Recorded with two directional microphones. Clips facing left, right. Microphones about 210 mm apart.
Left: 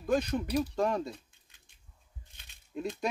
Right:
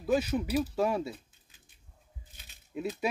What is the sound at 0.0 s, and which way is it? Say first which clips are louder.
Speech: right 1 dB; 5° right (ahead or behind).